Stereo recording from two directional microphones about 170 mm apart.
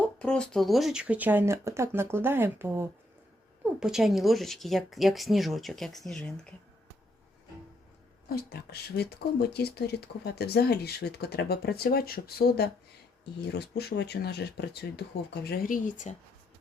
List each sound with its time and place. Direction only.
0.0 s speech: 5° left (ahead or behind)
8.3 s speech: 65° left (ahead or behind)
15.4 s speech: 55° left (ahead or behind)